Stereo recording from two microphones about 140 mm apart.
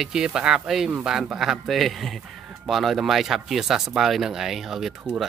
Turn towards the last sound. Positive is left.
turn(degrees=0)  # may be behind; listen again after turning